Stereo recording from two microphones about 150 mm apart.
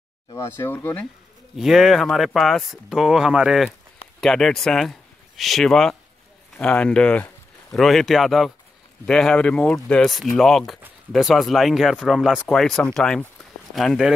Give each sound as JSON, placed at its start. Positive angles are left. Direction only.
{"t": 0.3, "sound": "speech", "side_deg": 20}
{"t": 1.6, "sound": "speech", "side_deg": -5}